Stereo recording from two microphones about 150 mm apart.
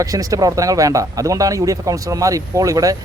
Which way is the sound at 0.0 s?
25° right (ahead or behind).